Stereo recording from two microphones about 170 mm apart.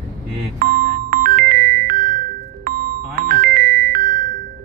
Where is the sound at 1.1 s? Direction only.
55° right (ahead or behind).